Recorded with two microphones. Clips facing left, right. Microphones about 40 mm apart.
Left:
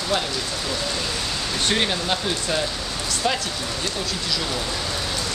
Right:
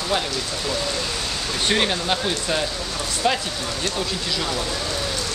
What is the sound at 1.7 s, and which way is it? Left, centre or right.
Speech, centre.